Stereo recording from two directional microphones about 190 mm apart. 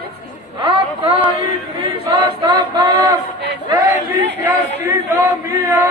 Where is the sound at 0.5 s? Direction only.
25° right (ahead or behind).